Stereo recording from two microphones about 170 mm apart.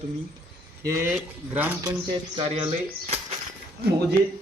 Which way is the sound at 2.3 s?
30° right (ahead or behind).